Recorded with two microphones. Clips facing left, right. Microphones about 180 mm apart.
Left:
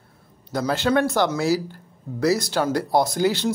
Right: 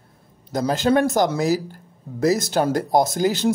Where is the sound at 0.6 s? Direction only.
35° right (ahead or behind).